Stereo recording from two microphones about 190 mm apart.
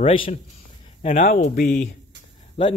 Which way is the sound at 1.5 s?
50° left (ahead or behind).